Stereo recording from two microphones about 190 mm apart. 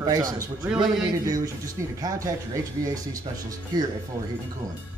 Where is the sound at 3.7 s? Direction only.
20° right (ahead or behind).